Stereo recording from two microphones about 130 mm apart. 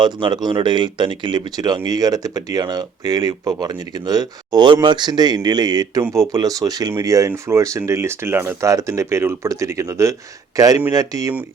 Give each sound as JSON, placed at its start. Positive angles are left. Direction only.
{"t": 0.0, "sound": "speech", "side_deg": -35}